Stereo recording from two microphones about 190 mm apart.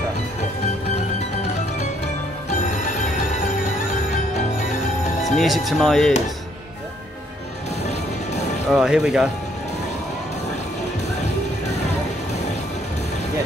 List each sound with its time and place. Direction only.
2.8 s music: 40° left (ahead or behind)
5.4 s speech: centre (ahead or behind)
8.6 s speech: 5° right (ahead or behind)